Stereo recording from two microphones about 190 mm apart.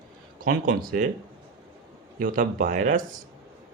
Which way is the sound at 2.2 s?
45° right (ahead or behind).